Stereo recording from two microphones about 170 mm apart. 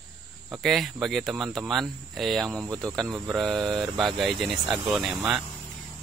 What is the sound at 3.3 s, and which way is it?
Speech, centre (ahead or behind).